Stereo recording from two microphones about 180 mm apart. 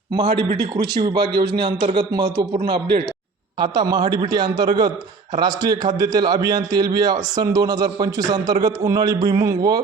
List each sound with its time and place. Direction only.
0.2 s a man's voice: 25° right (ahead or behind)